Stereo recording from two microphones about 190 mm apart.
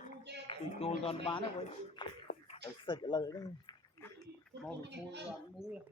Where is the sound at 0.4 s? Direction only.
30° left (ahead or behind).